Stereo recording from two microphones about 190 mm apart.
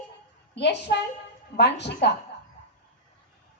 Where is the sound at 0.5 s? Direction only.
65° left (ahead or behind).